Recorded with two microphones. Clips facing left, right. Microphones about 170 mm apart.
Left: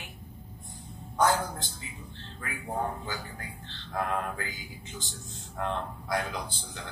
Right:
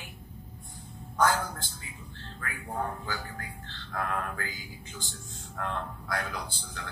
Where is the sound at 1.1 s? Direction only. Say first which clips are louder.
Left 1 dB; 20° left (ahead or behind).